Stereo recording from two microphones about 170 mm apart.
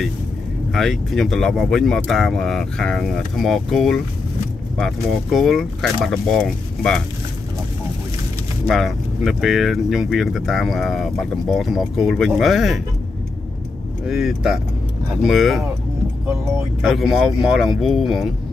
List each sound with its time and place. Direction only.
0.7 s speech: centre (ahead or behind)
8.6 s speech: centre (ahead or behind)
14.0 s speech: centre (ahead or behind)
16.8 s speech: centre (ahead or behind)